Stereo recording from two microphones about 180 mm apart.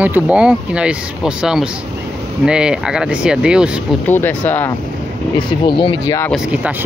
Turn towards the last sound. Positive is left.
turn(degrees=-5)  # may be behind; listen again after turning